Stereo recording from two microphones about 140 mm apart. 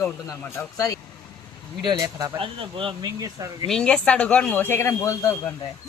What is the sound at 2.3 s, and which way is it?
Speech, 40° right (ahead or behind).